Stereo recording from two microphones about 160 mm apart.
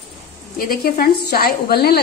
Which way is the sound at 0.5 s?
65° left (ahead or behind).